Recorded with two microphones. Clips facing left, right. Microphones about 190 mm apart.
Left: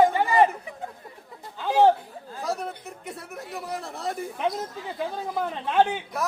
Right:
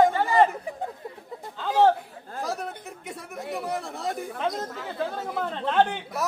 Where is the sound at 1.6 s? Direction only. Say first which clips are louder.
Left 1 dB; 15° left (ahead or behind).